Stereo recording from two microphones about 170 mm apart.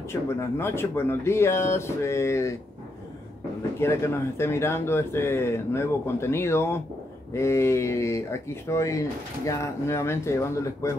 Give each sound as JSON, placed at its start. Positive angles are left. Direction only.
{"t": 0.1, "sound": "speech", "side_deg": 15}
{"t": 3.8, "sound": "speech", "side_deg": 15}